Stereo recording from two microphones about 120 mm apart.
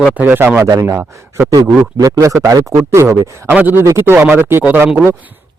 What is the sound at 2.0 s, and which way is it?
Speech, 30° right (ahead or behind).